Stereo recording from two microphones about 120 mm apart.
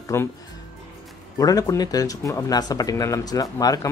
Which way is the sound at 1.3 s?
30° left (ahead or behind).